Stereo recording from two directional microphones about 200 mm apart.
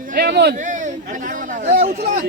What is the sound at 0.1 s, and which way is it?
Speech, 50° right (ahead or behind).